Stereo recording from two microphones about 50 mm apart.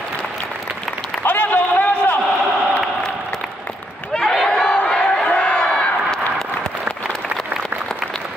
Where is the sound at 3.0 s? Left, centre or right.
Centre.